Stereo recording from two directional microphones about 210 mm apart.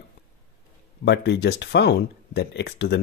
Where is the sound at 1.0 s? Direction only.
55° left (ahead or behind).